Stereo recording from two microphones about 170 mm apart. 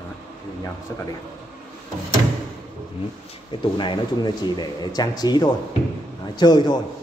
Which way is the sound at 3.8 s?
25° left (ahead or behind).